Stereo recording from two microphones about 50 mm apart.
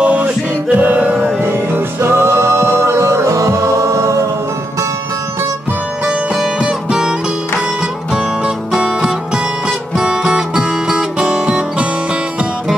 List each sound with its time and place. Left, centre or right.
0.0 s music: right
0.7 s chant: right
1.4 s music: right
6.0 s music: centre
8.7 s music: centre